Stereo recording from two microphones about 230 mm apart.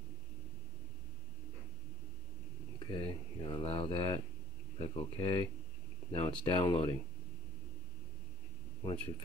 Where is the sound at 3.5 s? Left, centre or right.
Left.